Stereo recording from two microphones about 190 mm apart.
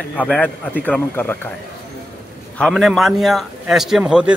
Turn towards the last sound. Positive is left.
turn(degrees=-5)  # may be behind; listen again after turning